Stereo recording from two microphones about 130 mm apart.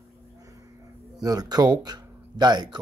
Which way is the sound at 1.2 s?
30° right (ahead or behind).